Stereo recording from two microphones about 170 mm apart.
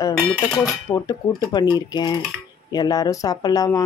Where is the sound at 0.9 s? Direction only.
20° left (ahead or behind).